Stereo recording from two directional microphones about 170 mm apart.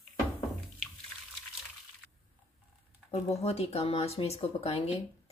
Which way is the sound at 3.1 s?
40° left (ahead or behind).